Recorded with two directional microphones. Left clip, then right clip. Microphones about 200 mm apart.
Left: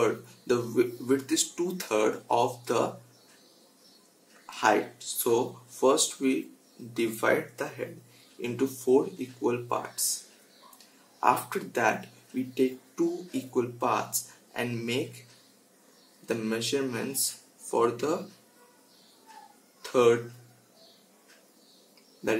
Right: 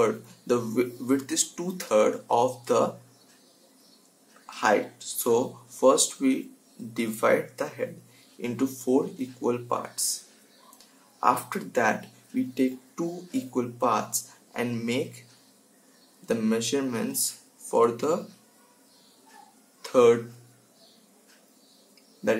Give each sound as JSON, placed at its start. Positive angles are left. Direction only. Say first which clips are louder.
{"t": 0.0, "sound": "speech", "louder": "right 2 dB", "side_deg": -15}
{"t": 4.5, "sound": "speech", "louder": "right 1 dB", "side_deg": -10}
{"t": 11.1, "sound": "speech", "louder": "right 1 dB", "side_deg": -10}
{"t": 16.3, "sound": "speech", "louder": "right 3 dB", "side_deg": -15}
{"t": 19.8, "sound": "a sound", "louder": "right 3 dB", "side_deg": -15}